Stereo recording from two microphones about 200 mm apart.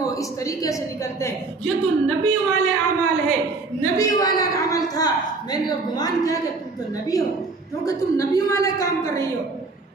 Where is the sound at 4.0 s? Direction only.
20° left (ahead or behind).